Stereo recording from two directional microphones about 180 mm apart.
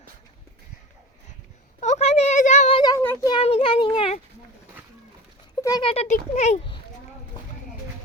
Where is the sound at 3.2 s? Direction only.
30° left (ahead or behind).